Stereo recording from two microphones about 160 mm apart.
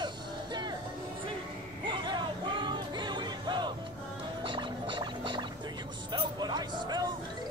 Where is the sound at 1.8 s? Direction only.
30° right (ahead or behind).